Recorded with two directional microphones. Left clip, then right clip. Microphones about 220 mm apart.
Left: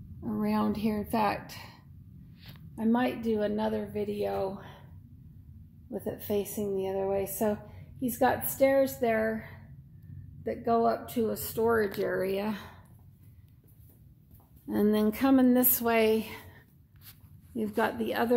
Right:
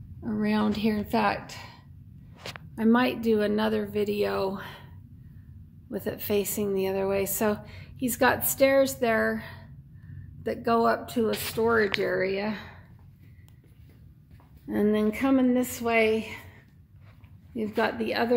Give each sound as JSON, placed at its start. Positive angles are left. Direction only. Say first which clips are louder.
{"t": 0.4, "sound": "a woman's voice", "louder": "right 3 dB", "side_deg": 5}
{"t": 5.9, "sound": "a woman's voice", "louder": "right 4 dB", "side_deg": -5}
{"t": 14.7, "sound": "speech", "louder": "right 2 dB", "side_deg": 10}
{"t": 17.7, "sound": "speech", "louder": "right 3 dB", "side_deg": 10}